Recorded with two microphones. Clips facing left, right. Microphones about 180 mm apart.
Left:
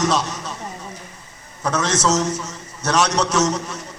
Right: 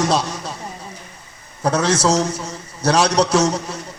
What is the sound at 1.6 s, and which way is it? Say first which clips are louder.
A man's voice: right 3 dB; 30° right (ahead or behind).